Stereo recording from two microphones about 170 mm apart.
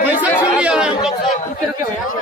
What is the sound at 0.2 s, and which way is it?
Chatter, 5° right (ahead or behind).